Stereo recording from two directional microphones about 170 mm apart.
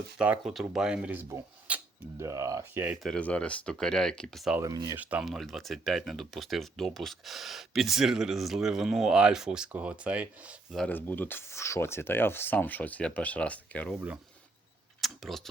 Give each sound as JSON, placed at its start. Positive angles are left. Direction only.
{"t": 0.2, "sound": "speech", "side_deg": -5}
{"t": 3.0, "sound": "speech", "side_deg": 5}
{"t": 4.5, "sound": "speech", "side_deg": -20}
{"t": 4.9, "sound": "speech", "side_deg": -5}
{"t": 10.8, "sound": "speech", "side_deg": 10}
{"t": 15.0, "sound": "tick", "side_deg": 0}